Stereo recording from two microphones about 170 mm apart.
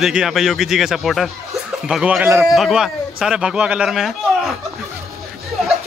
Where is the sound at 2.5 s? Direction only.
Centre (ahead or behind).